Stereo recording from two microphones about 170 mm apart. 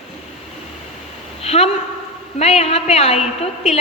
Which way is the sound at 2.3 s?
40° left (ahead or behind).